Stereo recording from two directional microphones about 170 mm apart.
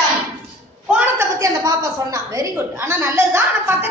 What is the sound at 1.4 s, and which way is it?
A woman's voice, 20° right (ahead or behind).